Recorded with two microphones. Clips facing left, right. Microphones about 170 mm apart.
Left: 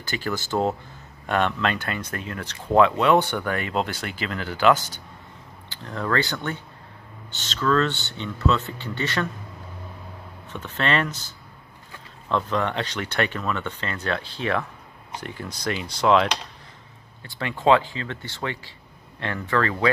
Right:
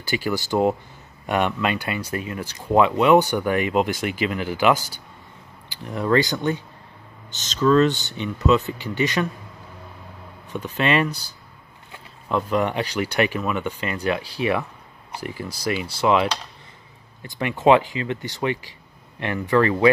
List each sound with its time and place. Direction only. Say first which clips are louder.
0.0 s speech: right 4 dB; 15° right (ahead or behind)
10.5 s speech: right 3 dB; 15° right (ahead or behind)
12.3 s speech: right 2 dB; 10° right (ahead or behind)
17.2 s speech: right 4 dB; 15° right (ahead or behind)